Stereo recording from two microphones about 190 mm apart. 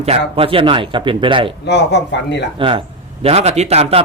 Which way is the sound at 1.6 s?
65° left (ahead or behind).